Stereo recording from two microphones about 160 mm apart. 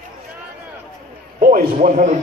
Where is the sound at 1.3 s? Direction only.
55° right (ahead or behind).